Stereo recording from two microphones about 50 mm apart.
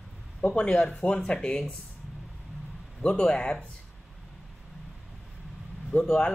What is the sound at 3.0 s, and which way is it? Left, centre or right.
Speech, centre.